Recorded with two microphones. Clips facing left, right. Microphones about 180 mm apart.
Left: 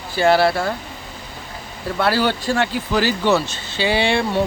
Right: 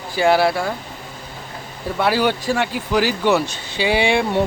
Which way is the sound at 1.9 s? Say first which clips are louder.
Right 1 dB; 15° right (ahead or behind).